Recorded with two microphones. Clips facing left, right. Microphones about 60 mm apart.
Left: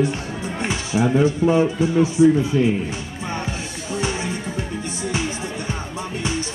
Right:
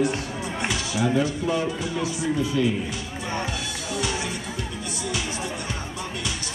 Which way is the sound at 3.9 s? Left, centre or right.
Left.